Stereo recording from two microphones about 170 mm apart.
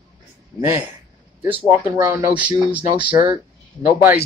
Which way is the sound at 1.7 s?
20° right (ahead or behind).